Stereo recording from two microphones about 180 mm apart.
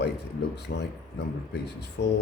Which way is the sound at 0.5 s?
70° left (ahead or behind).